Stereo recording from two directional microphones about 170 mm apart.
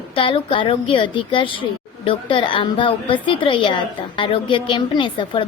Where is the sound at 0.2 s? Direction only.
30° left (ahead or behind).